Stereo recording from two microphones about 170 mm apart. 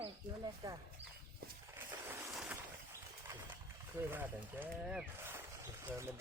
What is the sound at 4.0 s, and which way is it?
Speech, 10° right (ahead or behind).